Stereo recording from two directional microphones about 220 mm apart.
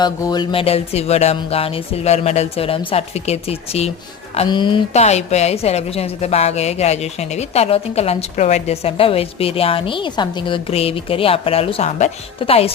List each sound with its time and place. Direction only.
0.0 s a woman's voice: 20° left (ahead or behind)